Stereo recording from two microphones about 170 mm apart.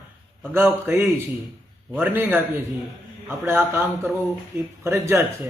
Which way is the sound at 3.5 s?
15° right (ahead or behind).